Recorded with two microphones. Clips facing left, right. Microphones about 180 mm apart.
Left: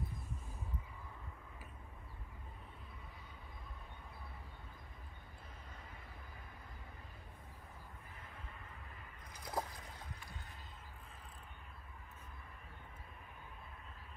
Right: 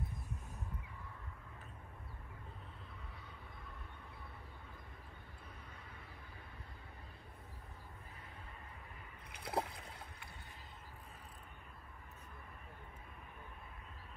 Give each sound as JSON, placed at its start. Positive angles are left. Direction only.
{"t": 9.4, "sound": "boat", "side_deg": -30}